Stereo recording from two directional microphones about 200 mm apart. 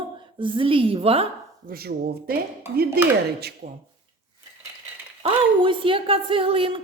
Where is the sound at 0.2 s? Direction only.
25° right (ahead or behind).